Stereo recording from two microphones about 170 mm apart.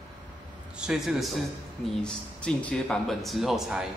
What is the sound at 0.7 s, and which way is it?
Speech, 5° right (ahead or behind).